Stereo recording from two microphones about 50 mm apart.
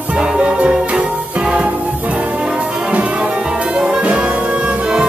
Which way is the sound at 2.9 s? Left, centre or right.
Right.